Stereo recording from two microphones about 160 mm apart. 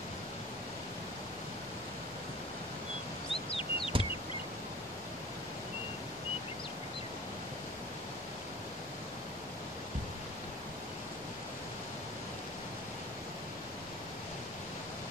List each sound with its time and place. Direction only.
3.4 s bird: 35° left (ahead or behind)